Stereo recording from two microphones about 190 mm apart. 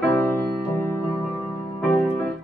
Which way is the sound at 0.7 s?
15° left (ahead or behind).